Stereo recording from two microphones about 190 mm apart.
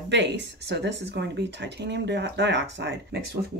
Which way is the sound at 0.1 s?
65° right (ahead or behind).